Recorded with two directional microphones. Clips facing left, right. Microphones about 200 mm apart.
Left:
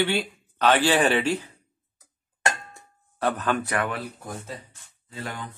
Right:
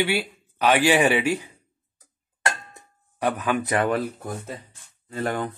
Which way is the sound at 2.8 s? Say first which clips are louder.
Right 1 dB; 15° right (ahead or behind).